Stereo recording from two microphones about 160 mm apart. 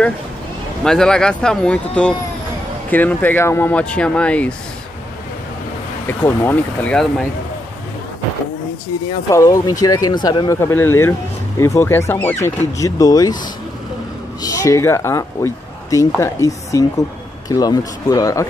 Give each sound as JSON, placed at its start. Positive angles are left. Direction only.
{"t": 0.8, "sound": "speech", "side_deg": 5}
{"t": 6.0, "sound": "speech", "side_deg": 10}
{"t": 9.3, "sound": "speech", "side_deg": 20}
{"t": 14.4, "sound": "speech", "side_deg": 20}